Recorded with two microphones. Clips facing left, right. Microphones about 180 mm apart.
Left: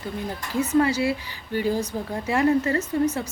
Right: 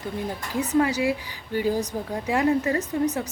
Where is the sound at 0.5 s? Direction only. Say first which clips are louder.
Left 2 dB; 15° right (ahead or behind).